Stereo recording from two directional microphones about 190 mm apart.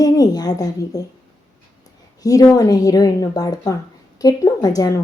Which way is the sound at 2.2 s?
20° left (ahead or behind).